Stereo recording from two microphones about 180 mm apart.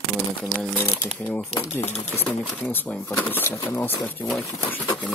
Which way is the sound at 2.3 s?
5° left (ahead or behind).